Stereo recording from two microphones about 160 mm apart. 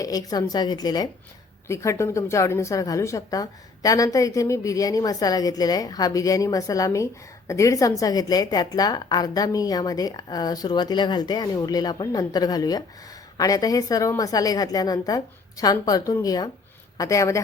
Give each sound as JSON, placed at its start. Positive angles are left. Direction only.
{"t": 0.0, "sound": "a woman's voice", "side_deg": 25}